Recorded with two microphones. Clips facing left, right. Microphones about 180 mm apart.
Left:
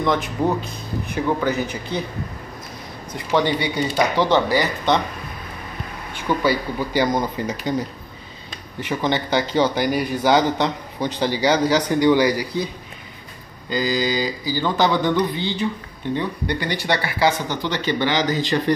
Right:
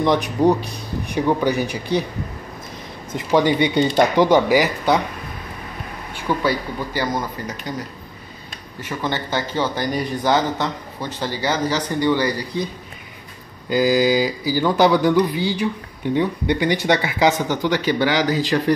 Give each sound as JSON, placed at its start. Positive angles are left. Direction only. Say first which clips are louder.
{"t": 0.0, "sound": "speech", "louder": "right 4 dB", "side_deg": -15}
{"t": 3.1, "sound": "speech", "louder": "right 3 dB", "side_deg": -20}
{"t": 6.2, "sound": "speech", "louder": "left 1 dB", "side_deg": 0}
{"t": 6.9, "sound": "speech", "louder": "left 4 dB", "side_deg": 20}
{"t": 8.8, "sound": "speech", "louder": "left 3 dB", "side_deg": 15}
{"t": 13.7, "sound": "speech", "louder": "right 5 dB", "side_deg": -10}